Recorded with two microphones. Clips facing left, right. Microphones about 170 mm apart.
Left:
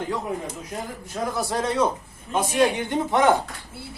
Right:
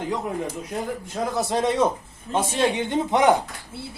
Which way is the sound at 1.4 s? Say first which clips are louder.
Right 2 dB; 20° right (ahead or behind).